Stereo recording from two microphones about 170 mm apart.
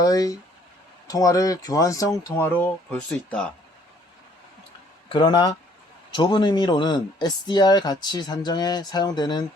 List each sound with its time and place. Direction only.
0.0 s speech: 20° left (ahead or behind)
5.0 s speech: 25° left (ahead or behind)